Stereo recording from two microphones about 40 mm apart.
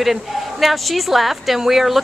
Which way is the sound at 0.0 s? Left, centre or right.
Centre.